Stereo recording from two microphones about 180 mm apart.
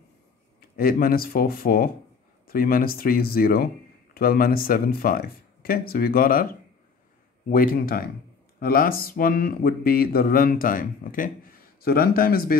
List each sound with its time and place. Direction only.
0.6 s speech: 55° left (ahead or behind)
7.4 s speech: 50° left (ahead or behind)